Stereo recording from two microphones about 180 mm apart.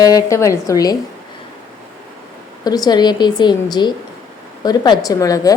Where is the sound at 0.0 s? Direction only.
20° left (ahead or behind).